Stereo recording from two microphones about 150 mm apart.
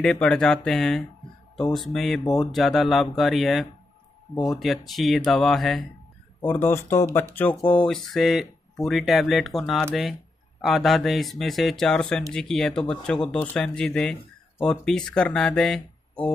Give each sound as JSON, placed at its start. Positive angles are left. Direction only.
{"t": 0.0, "sound": "speech", "side_deg": 5}
{"t": 6.4, "sound": "speech", "side_deg": 15}